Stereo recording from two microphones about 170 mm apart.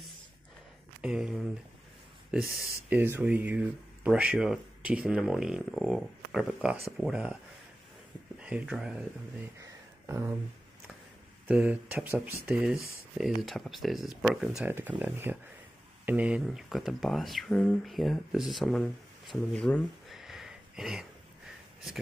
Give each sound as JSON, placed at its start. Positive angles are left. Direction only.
{"t": 1.0, "sound": "speech", "side_deg": -5}
{"t": 8.4, "sound": "speech", "side_deg": -5}
{"t": 9.6, "sound": "a sound", "side_deg": -15}
{"t": 11.4, "sound": "speech", "side_deg": -5}